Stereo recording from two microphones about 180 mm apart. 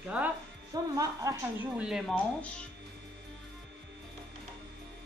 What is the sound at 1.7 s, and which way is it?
Speech, 5° right (ahead or behind).